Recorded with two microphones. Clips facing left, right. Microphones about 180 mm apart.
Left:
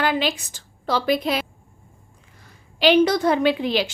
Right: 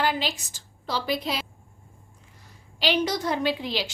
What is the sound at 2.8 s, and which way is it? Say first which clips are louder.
A woman's voice: left 9 dB; 55° left (ahead or behind).